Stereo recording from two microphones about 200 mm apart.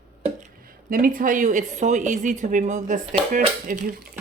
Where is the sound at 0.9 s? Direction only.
45° right (ahead or behind).